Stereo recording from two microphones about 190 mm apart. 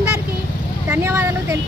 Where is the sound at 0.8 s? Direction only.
15° right (ahead or behind).